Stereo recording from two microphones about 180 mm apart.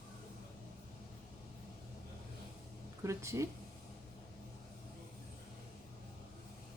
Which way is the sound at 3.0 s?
15° right (ahead or behind).